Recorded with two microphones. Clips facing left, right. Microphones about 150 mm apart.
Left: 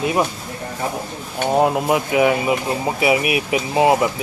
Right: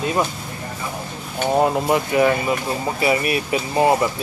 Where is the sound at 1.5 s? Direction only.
5° left (ahead or behind).